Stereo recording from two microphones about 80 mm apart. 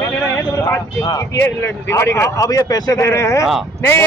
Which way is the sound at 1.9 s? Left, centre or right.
Left.